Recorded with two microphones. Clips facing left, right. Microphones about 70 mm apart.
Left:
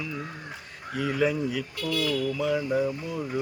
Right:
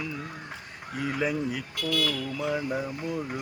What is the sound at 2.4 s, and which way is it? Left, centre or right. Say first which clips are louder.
Mantra: left 2 dB; centre.